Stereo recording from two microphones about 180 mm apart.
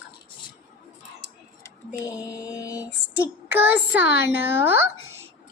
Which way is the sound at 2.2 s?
20° left (ahead or behind).